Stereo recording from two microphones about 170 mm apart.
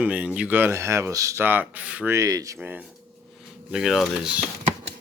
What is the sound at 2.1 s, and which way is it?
Speech, 20° right (ahead or behind).